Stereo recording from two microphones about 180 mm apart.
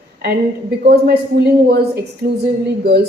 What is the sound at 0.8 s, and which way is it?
A woman's voice, 60° right (ahead or behind).